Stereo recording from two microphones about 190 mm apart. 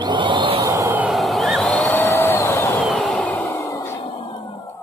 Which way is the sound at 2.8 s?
Centre (ahead or behind).